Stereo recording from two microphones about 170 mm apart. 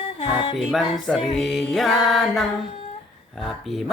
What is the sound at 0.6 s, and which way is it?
Speech, centre (ahead or behind).